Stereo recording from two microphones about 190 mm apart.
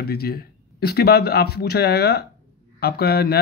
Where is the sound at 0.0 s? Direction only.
55° left (ahead or behind).